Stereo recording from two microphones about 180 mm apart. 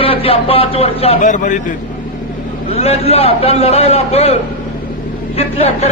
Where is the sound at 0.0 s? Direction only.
30° left (ahead or behind).